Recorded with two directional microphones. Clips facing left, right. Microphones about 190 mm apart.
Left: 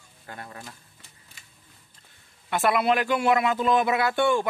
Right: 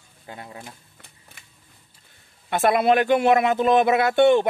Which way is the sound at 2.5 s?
25° right (ahead or behind).